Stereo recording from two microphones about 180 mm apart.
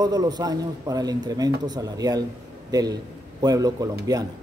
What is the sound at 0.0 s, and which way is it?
A man's voice, 20° right (ahead or behind).